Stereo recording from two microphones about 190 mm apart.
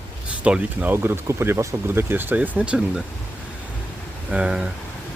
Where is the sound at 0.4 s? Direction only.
10° right (ahead or behind).